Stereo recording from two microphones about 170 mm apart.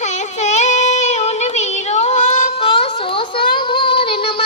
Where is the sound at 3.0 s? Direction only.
30° left (ahead or behind).